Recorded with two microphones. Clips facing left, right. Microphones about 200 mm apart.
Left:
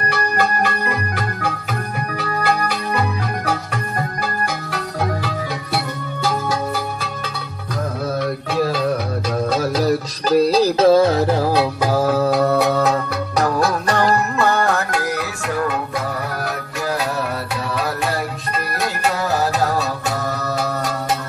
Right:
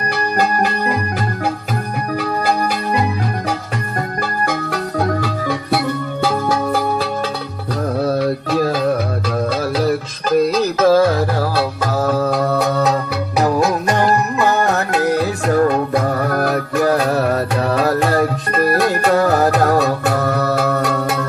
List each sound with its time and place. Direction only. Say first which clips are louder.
8.2 s music: right 3 dB; 40° right (ahead or behind)
9.5 s music: even; 40° left (ahead or behind); by 11.6 s 25° left (ahead or behind)
11.8 s music: right 2 dB; 10° left (ahead or behind)
13.5 s music: right 3 dB; 20° right (ahead or behind); by 21.2 s 60° right (ahead or behind)